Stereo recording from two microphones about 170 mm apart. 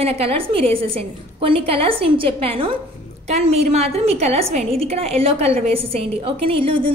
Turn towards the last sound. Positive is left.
turn(degrees=-35)  # may be behind; listen again after turning